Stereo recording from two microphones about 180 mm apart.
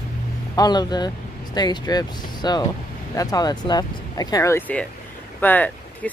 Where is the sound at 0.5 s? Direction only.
20° left (ahead or behind).